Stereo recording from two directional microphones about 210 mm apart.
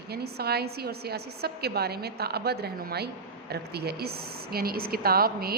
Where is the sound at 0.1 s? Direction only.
50° right (ahead or behind).